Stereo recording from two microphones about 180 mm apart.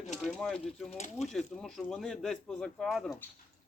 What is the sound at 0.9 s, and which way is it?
Speech, 40° left (ahead or behind).